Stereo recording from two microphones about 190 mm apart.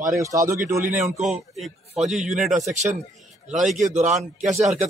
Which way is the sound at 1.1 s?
35° right (ahead or behind).